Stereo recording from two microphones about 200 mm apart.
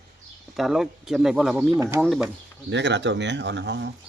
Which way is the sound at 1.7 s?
15° right (ahead or behind).